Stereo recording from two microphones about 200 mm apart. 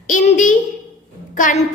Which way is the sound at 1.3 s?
40° left (ahead or behind).